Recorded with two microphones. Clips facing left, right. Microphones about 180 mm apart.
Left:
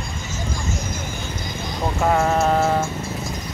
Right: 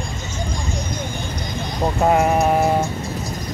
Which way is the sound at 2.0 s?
15° right (ahead or behind).